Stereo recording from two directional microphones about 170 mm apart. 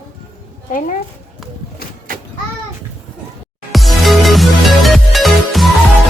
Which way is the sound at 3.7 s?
Centre (ahead or behind).